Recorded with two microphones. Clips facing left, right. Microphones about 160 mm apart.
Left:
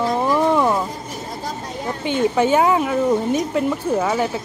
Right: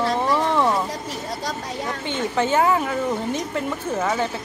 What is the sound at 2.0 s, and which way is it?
Speech, 15° left (ahead or behind).